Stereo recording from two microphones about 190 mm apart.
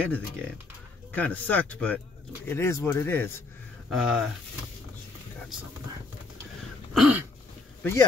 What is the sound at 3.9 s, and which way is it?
Speech, 5° right (ahead or behind).